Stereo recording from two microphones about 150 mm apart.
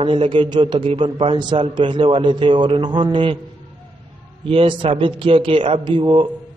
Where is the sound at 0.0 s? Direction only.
35° right (ahead or behind).